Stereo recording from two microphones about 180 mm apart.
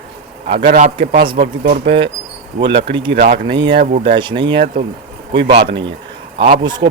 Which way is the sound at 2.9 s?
25° right (ahead or behind).